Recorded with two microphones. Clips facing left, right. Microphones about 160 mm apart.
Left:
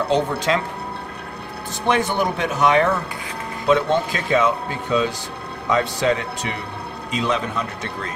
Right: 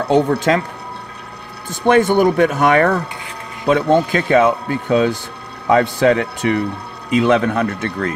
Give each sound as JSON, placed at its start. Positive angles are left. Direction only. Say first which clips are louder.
{"t": 0.1, "sound": "speech", "louder": "right 8 dB", "side_deg": -50}
{"t": 1.7, "sound": "a man's voice", "louder": "right 8 dB", "side_deg": -50}